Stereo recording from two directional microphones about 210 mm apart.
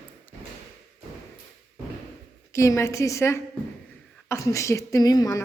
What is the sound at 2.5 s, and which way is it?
A woman's voice, 15° left (ahead or behind).